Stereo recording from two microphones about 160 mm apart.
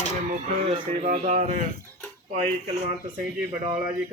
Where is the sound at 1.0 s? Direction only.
50° right (ahead or behind).